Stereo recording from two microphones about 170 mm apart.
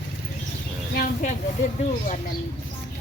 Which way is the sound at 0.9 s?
60° left (ahead or behind).